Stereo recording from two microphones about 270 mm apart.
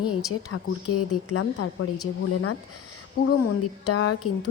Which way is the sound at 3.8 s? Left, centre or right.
Left.